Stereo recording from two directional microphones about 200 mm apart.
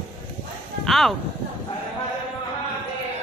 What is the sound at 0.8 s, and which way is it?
Speech, centre (ahead or behind).